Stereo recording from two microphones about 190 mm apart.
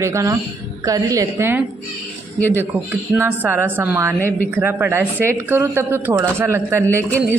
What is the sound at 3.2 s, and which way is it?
A woman's voice, 10° right (ahead or behind).